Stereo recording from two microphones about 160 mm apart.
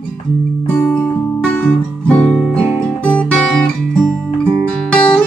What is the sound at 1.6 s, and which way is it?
Guitar, 5° left (ahead or behind).